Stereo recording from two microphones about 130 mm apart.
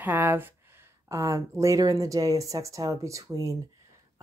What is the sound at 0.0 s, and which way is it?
Speech, 15° right (ahead or behind).